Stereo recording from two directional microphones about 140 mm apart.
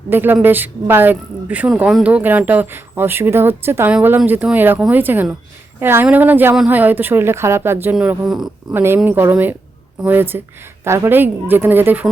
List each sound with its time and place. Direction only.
0.1 s a woman's voice: 15° right (ahead or behind)
8.7 s a woman's voice: 15° right (ahead or behind)